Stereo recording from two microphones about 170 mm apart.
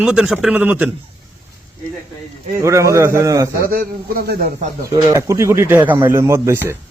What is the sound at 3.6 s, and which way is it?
Speech, 60° right (ahead or behind).